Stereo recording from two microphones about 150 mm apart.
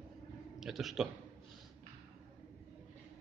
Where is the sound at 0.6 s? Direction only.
Centre (ahead or behind).